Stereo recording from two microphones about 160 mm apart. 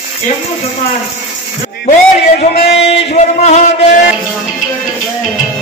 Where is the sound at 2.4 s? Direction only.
40° left (ahead or behind).